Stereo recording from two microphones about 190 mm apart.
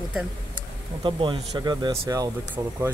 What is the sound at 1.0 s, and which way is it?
Speech, 25° right (ahead or behind).